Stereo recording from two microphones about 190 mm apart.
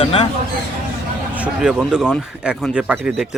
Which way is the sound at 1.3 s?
5° right (ahead or behind).